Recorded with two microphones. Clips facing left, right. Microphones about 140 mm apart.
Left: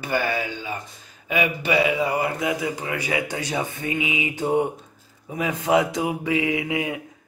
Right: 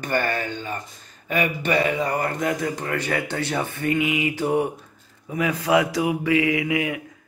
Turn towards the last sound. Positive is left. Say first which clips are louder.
# right 2 dB
turn(degrees=25)  # may be behind; listen again after turning